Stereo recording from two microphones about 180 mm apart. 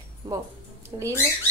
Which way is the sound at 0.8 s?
15° right (ahead or behind).